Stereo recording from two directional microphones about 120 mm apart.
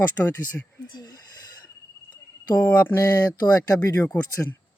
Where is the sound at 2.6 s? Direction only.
20° left (ahead or behind).